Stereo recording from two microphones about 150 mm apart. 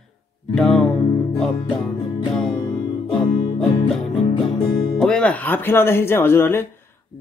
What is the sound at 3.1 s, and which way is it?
Music, 5° left (ahead or behind).